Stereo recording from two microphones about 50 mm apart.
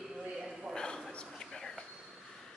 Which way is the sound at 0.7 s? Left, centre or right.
Centre.